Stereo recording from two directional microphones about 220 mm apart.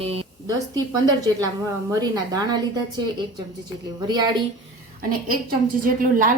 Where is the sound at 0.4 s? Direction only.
20° right (ahead or behind).